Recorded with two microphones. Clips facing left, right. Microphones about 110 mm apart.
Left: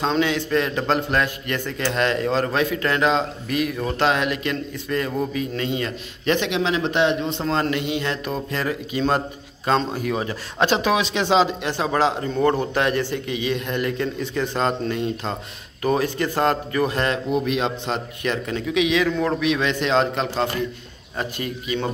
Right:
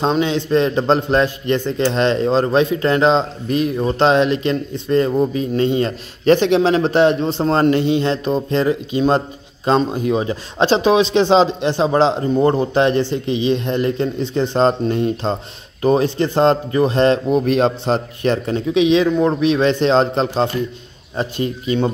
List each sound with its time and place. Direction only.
0.1 s a man's voice: 25° right (ahead or behind)